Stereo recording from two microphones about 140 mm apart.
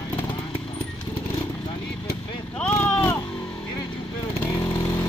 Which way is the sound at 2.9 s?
20° left (ahead or behind).